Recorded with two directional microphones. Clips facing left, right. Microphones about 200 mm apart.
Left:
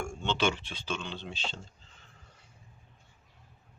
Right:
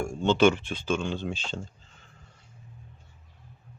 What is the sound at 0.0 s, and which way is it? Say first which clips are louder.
Speech: right 9 dB; 35° right (ahead or behind).